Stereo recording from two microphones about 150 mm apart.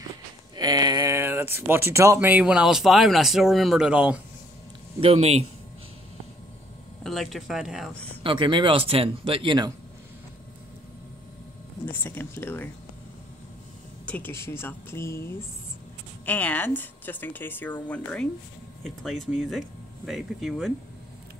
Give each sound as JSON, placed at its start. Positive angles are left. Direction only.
{"t": 0.6, "sound": "speech", "side_deg": -25}
{"t": 5.0, "sound": "speech", "side_deg": -45}
{"t": 7.0, "sound": "speech", "side_deg": 0}
{"t": 8.2, "sound": "speech", "side_deg": -35}
{"t": 11.8, "sound": "a woman's voice", "side_deg": 10}
{"t": 14.0, "sound": "a woman's voice", "side_deg": 10}